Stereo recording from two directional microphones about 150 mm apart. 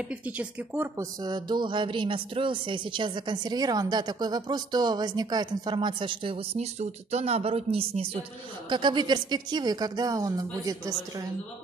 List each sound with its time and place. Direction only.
0.1 s speech: 10° right (ahead or behind)
1.2 s speech: 30° right (ahead or behind)
8.6 s a woman's voice: 30° right (ahead or behind)